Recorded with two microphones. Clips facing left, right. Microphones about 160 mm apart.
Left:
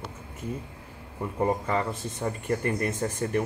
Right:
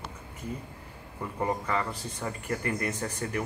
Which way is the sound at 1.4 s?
25° left (ahead or behind).